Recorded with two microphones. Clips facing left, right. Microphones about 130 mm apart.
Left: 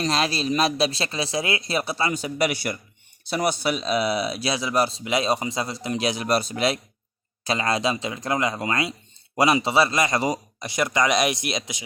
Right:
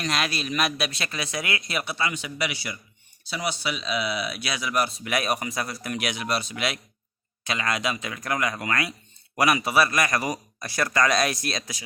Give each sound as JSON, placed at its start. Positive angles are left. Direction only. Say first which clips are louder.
{"t": 0.0, "sound": "speech", "louder": "left 4 dB", "side_deg": 30}